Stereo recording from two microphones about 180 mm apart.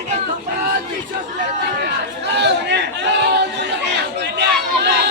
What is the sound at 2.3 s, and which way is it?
Chatter, 75° right (ahead or behind).